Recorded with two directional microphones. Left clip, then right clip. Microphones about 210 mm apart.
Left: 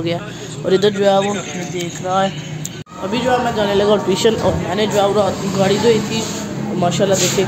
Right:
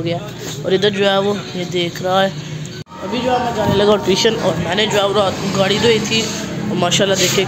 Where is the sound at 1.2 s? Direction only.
10° right (ahead or behind).